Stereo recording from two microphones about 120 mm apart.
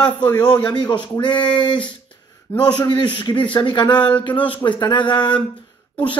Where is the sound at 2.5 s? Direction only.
15° left (ahead or behind).